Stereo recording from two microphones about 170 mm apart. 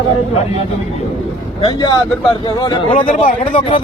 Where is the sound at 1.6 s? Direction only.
25° left (ahead or behind).